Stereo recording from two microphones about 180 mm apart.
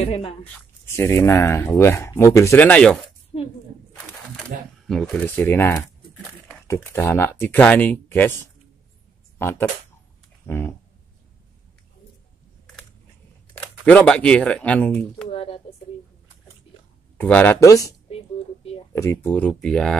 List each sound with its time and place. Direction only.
0.0 s speech: 30° left (ahead or behind)
0.8 s speech: 15° left (ahead or behind)
4.8 s speech: 5° left (ahead or behind)
9.4 s speech: 15° left (ahead or behind)
10.4 s a sound: 15° left (ahead or behind)
13.8 s speech: 5° left (ahead or behind)
15.3 s speech: 30° left (ahead or behind)
17.2 s speech: 10° left (ahead or behind)
18.1 s a sound: 30° left (ahead or behind)
18.9 s speech: 15° left (ahead or behind)